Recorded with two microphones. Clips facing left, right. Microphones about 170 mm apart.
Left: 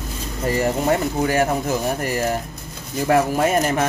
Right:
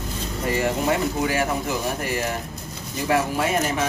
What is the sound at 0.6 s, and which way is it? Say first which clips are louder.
Speech: left 3 dB; 45° left (ahead or behind).